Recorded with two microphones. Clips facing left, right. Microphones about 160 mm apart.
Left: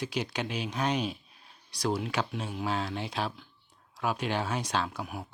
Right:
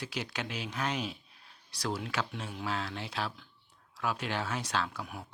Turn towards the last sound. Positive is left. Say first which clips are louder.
# left 3 dB
turn(degrees=15)  # may be behind; listen again after turning